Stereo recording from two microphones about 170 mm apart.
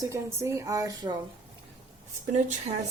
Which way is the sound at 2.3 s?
45° right (ahead or behind).